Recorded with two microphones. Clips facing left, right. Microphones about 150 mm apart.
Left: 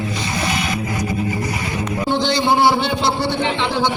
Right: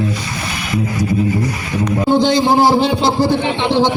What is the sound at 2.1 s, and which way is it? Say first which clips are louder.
A man's voice: right 5 dB; 45° right (ahead or behind).